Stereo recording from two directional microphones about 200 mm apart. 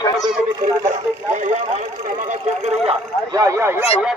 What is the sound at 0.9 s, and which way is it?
Speech, 35° right (ahead or behind).